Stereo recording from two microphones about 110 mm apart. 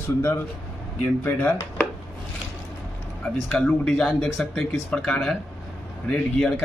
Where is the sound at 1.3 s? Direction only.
15° left (ahead or behind).